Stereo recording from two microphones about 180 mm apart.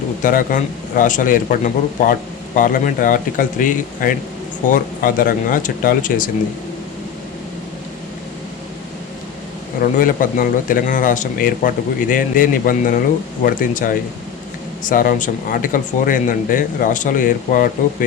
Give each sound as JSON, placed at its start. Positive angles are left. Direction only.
{"t": 0.2, "sound": "speech", "side_deg": 45}
{"t": 10.0, "sound": "speech", "side_deg": 50}